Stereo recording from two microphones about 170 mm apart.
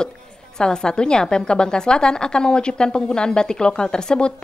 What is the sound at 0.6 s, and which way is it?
A woman's voice, 5° left (ahead or behind).